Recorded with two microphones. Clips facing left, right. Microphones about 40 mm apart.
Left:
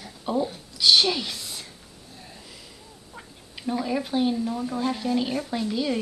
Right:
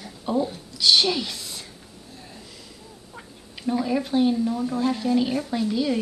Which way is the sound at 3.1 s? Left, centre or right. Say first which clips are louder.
Even; centre.